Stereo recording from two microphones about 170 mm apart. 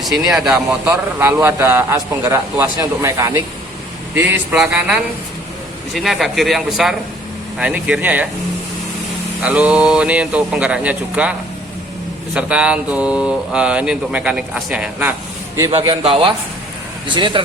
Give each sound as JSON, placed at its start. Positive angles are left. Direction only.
{"t": 0.0, "sound": "speech", "side_deg": 0}
{"t": 0.9, "sound": "a man's voice", "side_deg": -15}
{"t": 9.4, "sound": "speech", "side_deg": -5}
{"t": 15.5, "sound": "a man's voice", "side_deg": -20}
{"t": 16.0, "sound": "a man's voice", "side_deg": -30}